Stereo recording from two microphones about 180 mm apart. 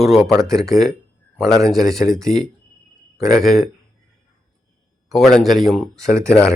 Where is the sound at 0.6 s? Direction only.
Centre (ahead or behind).